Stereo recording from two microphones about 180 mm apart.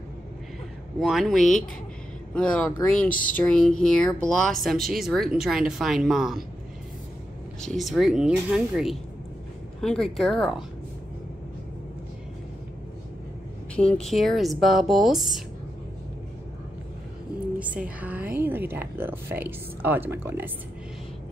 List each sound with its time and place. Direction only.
0.9 s speech: centre (ahead or behind)
7.6 s speech: centre (ahead or behind)
13.7 s speech: 5° left (ahead or behind)
17.8 s speech: 10° right (ahead or behind)